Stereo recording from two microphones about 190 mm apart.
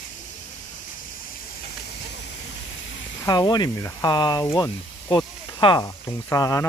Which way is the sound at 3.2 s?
20° left (ahead or behind).